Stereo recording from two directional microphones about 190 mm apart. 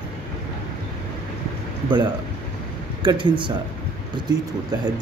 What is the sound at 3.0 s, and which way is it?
Speech, 25° right (ahead or behind).